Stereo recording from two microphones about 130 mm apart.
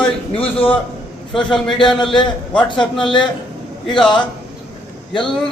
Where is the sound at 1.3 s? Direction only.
5° left (ahead or behind).